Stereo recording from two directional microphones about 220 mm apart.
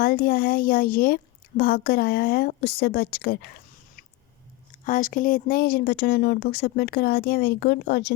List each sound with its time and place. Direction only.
0.0 s a woman's voice: 45° left (ahead or behind)
4.9 s a woman's voice: 40° left (ahead or behind)